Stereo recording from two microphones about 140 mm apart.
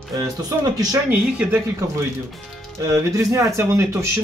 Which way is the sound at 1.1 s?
10° right (ahead or behind).